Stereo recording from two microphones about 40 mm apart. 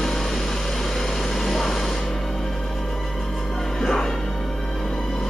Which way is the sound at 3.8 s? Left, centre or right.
Centre.